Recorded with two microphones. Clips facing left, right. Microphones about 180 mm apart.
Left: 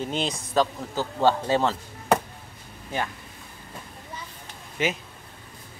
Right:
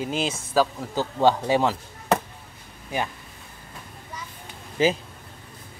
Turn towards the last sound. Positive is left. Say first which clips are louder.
# right 6 dB
turn(degrees=-30)  # may be behind; listen again after turning